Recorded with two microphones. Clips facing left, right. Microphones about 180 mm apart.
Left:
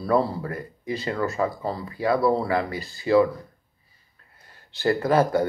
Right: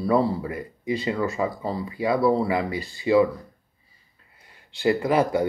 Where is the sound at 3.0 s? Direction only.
15° right (ahead or behind).